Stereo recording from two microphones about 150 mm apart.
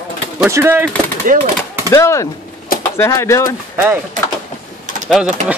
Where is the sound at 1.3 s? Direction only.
60° right (ahead or behind).